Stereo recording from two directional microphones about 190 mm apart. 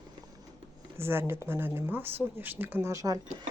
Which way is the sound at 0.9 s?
15° right (ahead or behind).